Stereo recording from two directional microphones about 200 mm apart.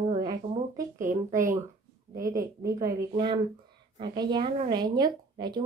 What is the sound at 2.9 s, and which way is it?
A woman's voice, 20° right (ahead or behind).